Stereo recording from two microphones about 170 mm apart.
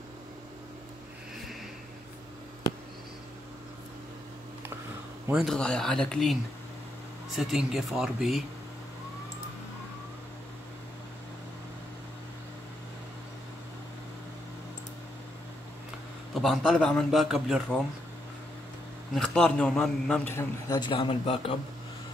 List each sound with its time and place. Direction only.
5.3 s a man's voice: centre (ahead or behind)
7.3 s a man's voice: centre (ahead or behind)
16.3 s a man's voice: centre (ahead or behind)
19.1 s a man's voice: 5° left (ahead or behind)
20.3 s a man's voice: 20° left (ahead or behind)